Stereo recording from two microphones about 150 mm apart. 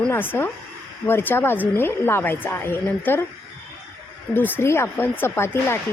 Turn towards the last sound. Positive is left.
turn(degrees=15)  # may be behind; listen again after turning